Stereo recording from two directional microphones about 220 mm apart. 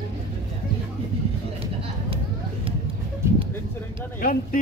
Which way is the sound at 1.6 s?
25° right (ahead or behind).